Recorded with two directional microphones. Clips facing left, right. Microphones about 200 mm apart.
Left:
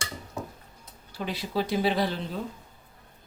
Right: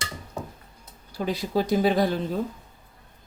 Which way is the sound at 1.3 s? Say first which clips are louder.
Right 5 dB; 45° right (ahead or behind).